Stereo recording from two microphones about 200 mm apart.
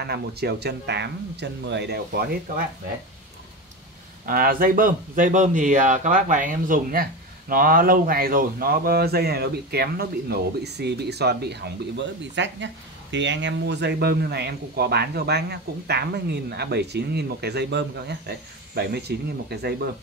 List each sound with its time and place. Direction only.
0.0 s speech: 55° right (ahead or behind)
4.3 s speech: 45° right (ahead or behind)